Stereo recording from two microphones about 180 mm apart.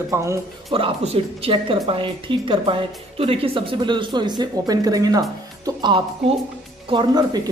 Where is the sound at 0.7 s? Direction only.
35° right (ahead or behind).